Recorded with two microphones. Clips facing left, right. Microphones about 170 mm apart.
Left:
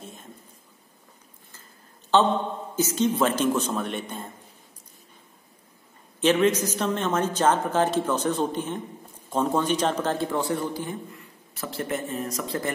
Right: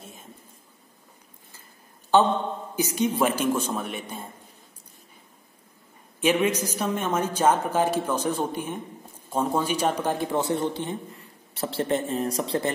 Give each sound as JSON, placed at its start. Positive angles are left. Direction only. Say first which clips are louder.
{"t": 2.1, "sound": "a man's voice", "louder": "right 1 dB", "side_deg": -10}
{"t": 6.2, "sound": "a man's voice", "louder": "left 2 dB", "side_deg": -10}